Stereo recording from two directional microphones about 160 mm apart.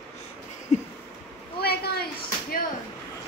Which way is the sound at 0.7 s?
45° left (ahead or behind).